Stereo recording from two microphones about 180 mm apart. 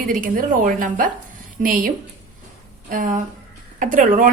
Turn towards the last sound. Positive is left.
turn(degrees=-45)  # may be behind; listen again after turning